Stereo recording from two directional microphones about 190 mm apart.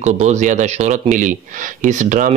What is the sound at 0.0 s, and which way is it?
Speech, 40° right (ahead or behind).